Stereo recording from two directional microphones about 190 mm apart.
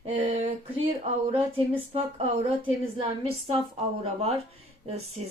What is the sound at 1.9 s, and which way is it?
Speech, 30° right (ahead or behind).